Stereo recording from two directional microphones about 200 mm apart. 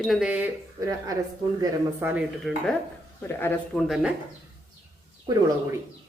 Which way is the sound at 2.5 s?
Centre (ahead or behind).